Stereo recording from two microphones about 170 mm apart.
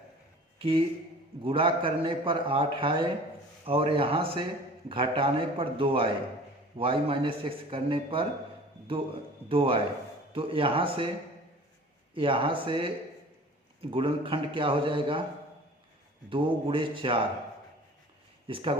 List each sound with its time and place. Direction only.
0.6 s a man's voice: 30° right (ahead or behind)
9.5 s a man's voice: 30° right (ahead or behind)
12.1 s a man's voice: 30° right (ahead or behind)
13.9 s a man's voice: 30° right (ahead or behind)
16.3 s a man's voice: 30° right (ahead or behind)
18.4 s a man's voice: 30° right (ahead or behind)